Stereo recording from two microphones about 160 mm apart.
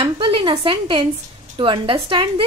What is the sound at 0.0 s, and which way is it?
A woman's voice, 35° right (ahead or behind).